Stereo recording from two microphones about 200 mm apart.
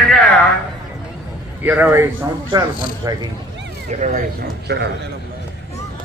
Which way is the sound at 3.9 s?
40° right (ahead or behind).